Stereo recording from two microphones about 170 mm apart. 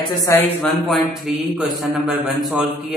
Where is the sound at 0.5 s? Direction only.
Centre (ahead or behind).